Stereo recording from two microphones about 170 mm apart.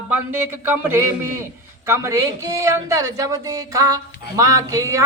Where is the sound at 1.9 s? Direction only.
15° right (ahead or behind).